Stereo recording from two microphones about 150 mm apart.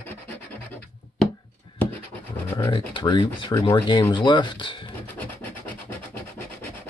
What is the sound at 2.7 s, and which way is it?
Speech, 35° left (ahead or behind).